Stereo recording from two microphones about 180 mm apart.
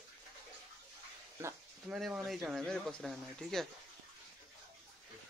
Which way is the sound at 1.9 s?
5° right (ahead or behind).